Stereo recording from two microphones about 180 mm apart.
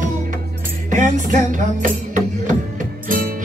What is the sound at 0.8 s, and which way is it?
Music, 45° right (ahead or behind).